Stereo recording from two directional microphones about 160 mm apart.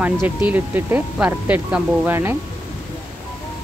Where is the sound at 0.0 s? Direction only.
10° right (ahead or behind).